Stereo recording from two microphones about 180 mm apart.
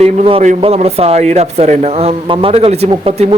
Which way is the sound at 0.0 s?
35° right (ahead or behind).